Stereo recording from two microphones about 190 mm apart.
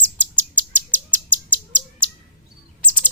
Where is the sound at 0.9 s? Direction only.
10° left (ahead or behind).